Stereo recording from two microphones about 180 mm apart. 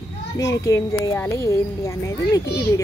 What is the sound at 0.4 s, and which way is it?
A child's voice, 15° left (ahead or behind).